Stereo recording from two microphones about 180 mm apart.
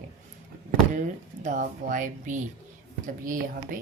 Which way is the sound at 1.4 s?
45° right (ahead or behind).